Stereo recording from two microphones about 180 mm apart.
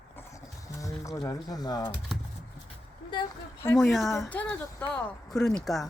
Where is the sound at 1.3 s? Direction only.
20° left (ahead or behind).